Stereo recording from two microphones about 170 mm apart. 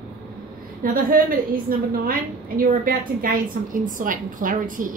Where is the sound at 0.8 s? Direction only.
55° right (ahead or behind).